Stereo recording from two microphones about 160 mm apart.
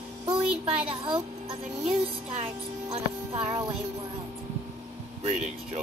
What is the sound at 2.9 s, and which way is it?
Speech, 35° right (ahead or behind).